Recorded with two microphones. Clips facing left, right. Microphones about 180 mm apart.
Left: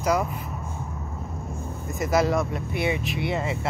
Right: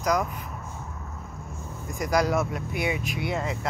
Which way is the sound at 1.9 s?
5° left (ahead or behind).